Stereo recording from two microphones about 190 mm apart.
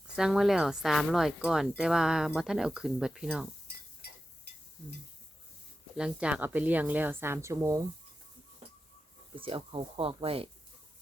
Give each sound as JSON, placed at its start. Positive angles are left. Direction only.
{"t": 0.2, "sound": "speech", "side_deg": -5}
{"t": 6.0, "sound": "a woman's voice", "side_deg": -5}
{"t": 9.3, "sound": "speech", "side_deg": -30}